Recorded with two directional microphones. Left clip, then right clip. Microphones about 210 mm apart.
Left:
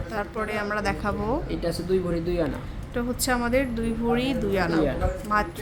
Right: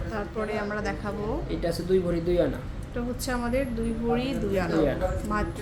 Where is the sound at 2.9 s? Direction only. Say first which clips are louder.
Left 5 dB; 30° left (ahead or behind).